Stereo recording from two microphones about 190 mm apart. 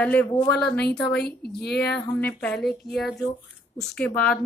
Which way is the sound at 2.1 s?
5° left (ahead or behind).